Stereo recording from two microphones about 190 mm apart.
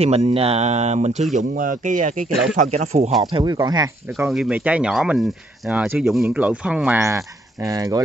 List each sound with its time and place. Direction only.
0.0 s speech: 35° right (ahead or behind)
3.3 s speech: 20° right (ahead or behind)
4.3 s speech: 5° right (ahead or behind)